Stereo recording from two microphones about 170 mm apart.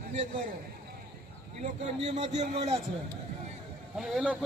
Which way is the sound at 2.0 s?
40° right (ahead or behind).